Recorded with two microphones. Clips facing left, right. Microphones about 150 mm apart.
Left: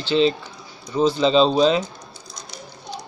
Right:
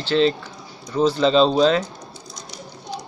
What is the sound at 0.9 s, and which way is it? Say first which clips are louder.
Speech: even; centre (ahead or behind).